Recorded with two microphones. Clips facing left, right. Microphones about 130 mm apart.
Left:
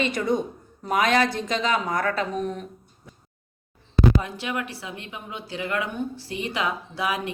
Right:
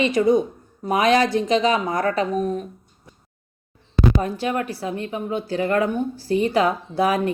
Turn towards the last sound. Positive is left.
turn(degrees=-45)  # may be behind; listen again after turning